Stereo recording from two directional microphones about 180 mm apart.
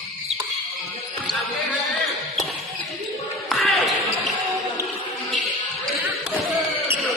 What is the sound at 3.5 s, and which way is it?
Basketball bounce, centre (ahead or behind).